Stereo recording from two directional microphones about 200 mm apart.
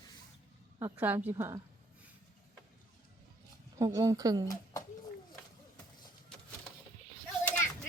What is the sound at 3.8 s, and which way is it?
Speech, 15° right (ahead or behind).